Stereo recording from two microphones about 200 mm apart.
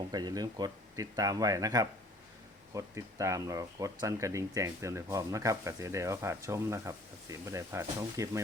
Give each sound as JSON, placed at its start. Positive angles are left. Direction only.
{"t": 0.1, "sound": "speech", "side_deg": -20}